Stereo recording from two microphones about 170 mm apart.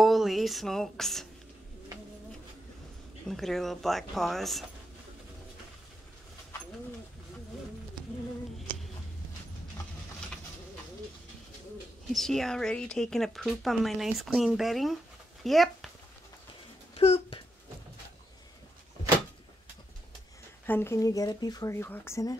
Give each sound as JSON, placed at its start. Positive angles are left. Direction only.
{"t": 0.0, "sound": "speech", "side_deg": 0}
{"t": 3.3, "sound": "speech", "side_deg": 0}
{"t": 12.1, "sound": "speech", "side_deg": 0}
{"t": 16.9, "sound": "speech", "side_deg": 35}
{"t": 20.6, "sound": "speech", "side_deg": 10}